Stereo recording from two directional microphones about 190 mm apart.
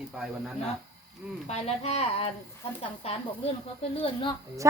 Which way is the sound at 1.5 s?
35° left (ahead or behind).